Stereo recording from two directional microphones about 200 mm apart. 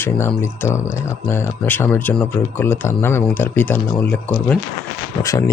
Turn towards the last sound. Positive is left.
turn(degrees=15)  # may be behind; listen again after turning